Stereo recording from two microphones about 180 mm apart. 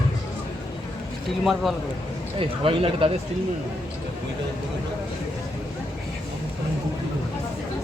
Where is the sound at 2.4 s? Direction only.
30° right (ahead or behind).